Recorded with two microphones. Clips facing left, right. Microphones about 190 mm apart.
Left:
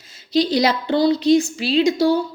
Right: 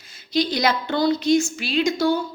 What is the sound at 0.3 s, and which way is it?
A woman's voice, 35° left (ahead or behind).